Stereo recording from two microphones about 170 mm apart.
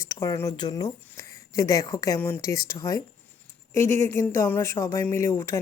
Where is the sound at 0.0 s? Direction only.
20° left (ahead or behind).